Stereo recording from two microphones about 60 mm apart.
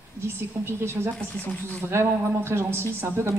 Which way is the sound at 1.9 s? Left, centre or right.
Right.